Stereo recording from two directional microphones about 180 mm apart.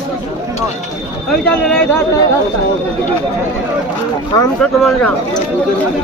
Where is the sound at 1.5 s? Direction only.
5° left (ahead or behind).